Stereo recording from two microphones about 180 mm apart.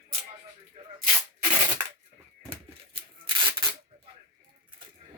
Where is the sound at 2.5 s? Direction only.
25° right (ahead or behind).